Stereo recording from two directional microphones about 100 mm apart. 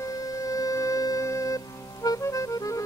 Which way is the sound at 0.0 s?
35° left (ahead or behind).